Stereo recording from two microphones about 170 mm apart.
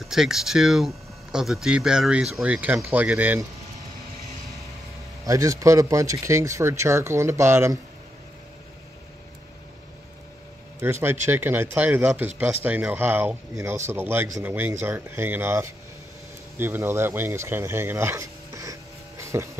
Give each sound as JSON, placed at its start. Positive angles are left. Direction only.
{"t": 0.1, "sound": "speech", "side_deg": 0}
{"t": 5.2, "sound": "speech", "side_deg": -20}
{"t": 10.8, "sound": "speech", "side_deg": -15}